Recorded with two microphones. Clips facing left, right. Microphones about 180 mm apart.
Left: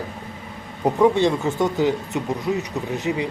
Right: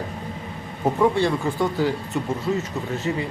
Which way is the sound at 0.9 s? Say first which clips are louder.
Left 3 dB; 20° left (ahead or behind).